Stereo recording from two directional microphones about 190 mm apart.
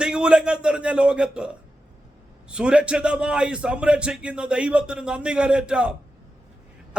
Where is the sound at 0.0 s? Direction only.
5° right (ahead or behind).